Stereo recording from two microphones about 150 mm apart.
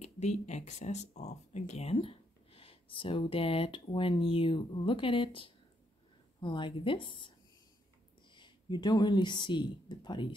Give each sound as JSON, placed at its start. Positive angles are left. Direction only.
{"t": 0.0, "sound": "speech", "side_deg": 50}